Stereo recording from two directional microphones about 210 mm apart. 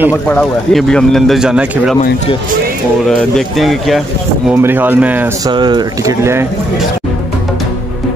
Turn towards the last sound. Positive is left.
turn(degrees=-10)  # may be behind; listen again after turning